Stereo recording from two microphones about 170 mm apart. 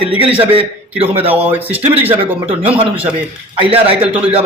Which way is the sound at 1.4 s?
10° right (ahead or behind).